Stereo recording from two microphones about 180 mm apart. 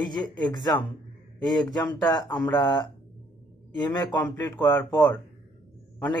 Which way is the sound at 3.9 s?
25° left (ahead or behind).